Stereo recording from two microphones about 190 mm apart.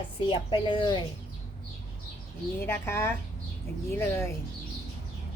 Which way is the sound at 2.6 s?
10° left (ahead or behind).